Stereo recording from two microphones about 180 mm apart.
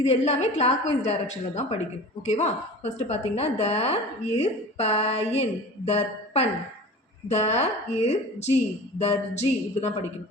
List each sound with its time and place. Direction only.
0.1 s speech: 40° left (ahead or behind)